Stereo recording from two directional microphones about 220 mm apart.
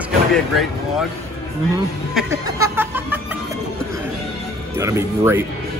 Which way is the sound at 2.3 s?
10° right (ahead or behind).